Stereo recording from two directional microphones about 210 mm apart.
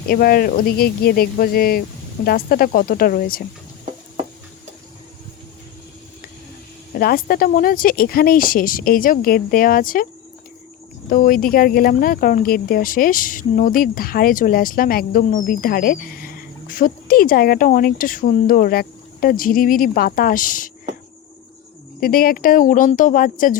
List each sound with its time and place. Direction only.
0.1 s speech: 45° left (ahead or behind)
6.9 s speech: 45° left (ahead or behind)
11.1 s speech: 40° left (ahead or behind)
22.0 s speech: 45° left (ahead or behind)